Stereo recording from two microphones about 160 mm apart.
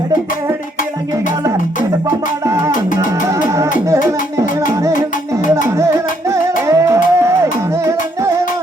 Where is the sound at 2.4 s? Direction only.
20° right (ahead or behind).